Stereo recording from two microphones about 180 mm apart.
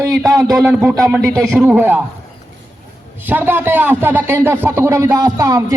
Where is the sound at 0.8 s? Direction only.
15° right (ahead or behind).